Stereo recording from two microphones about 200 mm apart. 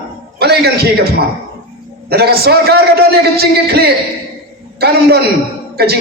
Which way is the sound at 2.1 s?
50° right (ahead or behind).